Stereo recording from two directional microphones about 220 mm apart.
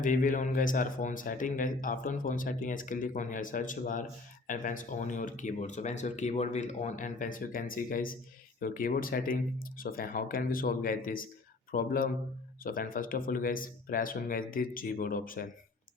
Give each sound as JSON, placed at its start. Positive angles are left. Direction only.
{"t": 0.0, "sound": "speech", "side_deg": 35}